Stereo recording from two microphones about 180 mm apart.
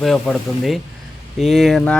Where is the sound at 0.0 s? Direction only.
Centre (ahead or behind).